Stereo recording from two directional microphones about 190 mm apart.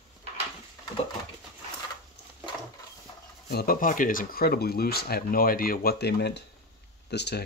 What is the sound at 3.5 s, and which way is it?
Speech, 55° left (ahead or behind).